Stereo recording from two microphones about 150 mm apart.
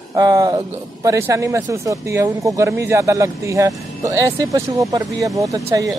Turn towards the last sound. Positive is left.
turn(degrees=-20)  # may be behind; listen again after turning